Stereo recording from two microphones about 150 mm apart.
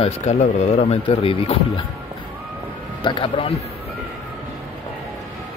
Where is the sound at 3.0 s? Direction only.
30° left (ahead or behind).